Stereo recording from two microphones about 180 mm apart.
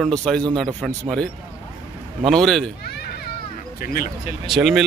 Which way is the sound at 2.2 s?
Centre (ahead or behind).